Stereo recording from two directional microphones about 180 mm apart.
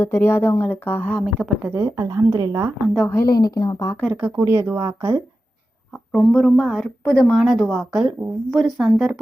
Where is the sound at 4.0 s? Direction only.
5° right (ahead or behind).